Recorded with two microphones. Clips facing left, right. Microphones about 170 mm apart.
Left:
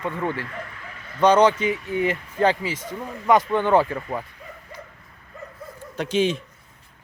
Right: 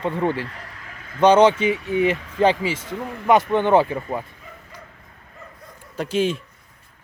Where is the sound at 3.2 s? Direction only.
25° right (ahead or behind).